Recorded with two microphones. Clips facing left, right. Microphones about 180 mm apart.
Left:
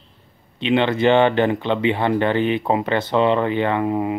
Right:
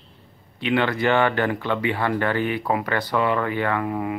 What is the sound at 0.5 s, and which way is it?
Speech, 20° left (ahead or behind).